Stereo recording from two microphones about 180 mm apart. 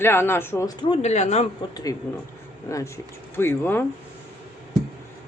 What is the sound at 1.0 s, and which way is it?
Speech, 40° left (ahead or behind).